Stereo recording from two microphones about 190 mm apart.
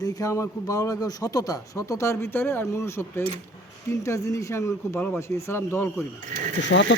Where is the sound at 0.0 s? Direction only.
20° left (ahead or behind).